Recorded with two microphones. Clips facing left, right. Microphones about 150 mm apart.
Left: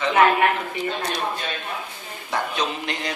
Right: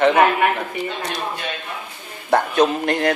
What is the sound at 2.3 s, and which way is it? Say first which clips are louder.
Speech: right 9 dB; 55° right (ahead or behind).